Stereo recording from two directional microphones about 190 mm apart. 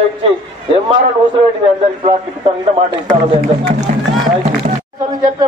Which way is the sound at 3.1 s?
35° right (ahead or behind).